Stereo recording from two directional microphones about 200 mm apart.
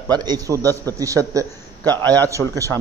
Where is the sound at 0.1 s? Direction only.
20° right (ahead or behind).